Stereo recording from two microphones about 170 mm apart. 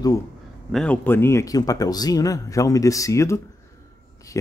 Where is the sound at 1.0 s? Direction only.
15° left (ahead or behind).